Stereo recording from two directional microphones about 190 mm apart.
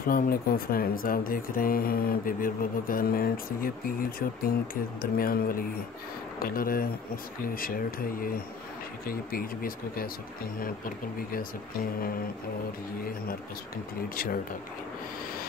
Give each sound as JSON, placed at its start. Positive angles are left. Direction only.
{"t": 0.0, "sound": "speech", "side_deg": 50}
{"t": 14.0, "sound": "speech", "side_deg": 50}